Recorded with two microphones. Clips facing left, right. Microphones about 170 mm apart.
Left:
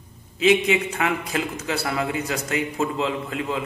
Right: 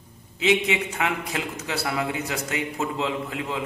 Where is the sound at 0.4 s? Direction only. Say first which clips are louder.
Left 4 dB; 20° right (ahead or behind).